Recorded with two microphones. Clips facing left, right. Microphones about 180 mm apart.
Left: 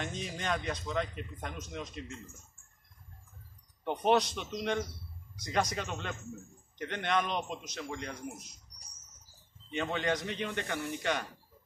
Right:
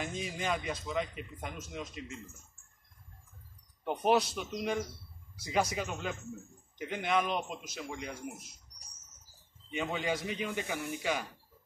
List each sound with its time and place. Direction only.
0.0 s a man's voice: 5° right (ahead or behind)
3.8 s a man's voice: 5° right (ahead or behind)
9.7 s a man's voice: 5° right (ahead or behind)